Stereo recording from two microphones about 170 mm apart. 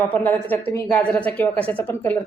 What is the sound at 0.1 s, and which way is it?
A woman's voice, 10° left (ahead or behind).